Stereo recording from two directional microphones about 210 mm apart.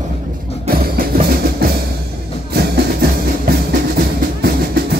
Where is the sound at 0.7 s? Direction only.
45° right (ahead or behind).